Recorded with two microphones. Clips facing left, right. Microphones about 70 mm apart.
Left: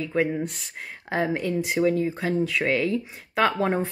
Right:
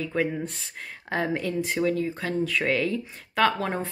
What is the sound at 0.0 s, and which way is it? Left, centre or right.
Speech, centre.